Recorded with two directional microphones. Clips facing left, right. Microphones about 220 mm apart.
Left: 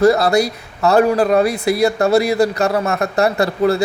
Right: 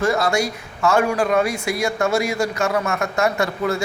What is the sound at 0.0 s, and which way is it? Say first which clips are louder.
A man's voice: left 7 dB; 35° left (ahead or behind).